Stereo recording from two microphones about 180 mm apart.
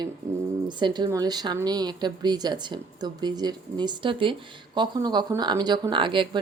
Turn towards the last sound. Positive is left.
turn(degrees=-25)  # may be behind; listen again after turning